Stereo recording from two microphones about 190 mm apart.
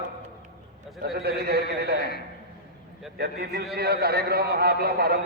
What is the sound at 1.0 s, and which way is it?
Speech, 55° right (ahead or behind).